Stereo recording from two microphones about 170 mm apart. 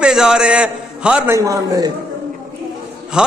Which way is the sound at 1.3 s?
20° right (ahead or behind).